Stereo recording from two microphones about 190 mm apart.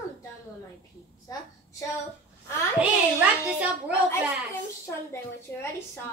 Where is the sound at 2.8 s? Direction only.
10° right (ahead or behind).